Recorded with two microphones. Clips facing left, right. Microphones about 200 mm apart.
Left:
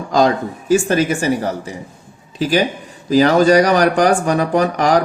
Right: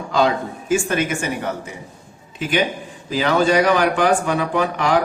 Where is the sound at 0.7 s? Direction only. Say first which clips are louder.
Left 5 dB; 35° left (ahead or behind).